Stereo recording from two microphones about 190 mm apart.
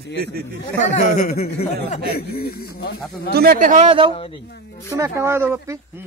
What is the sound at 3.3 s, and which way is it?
Speech, 50° right (ahead or behind).